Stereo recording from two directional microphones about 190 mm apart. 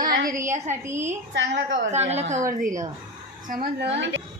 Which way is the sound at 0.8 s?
15° right (ahead or behind).